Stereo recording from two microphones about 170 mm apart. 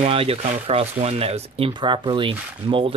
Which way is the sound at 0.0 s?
35° right (ahead or behind).